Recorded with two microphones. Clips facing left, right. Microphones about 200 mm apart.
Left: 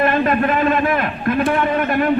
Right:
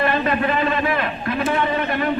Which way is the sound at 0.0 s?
50° left (ahead or behind).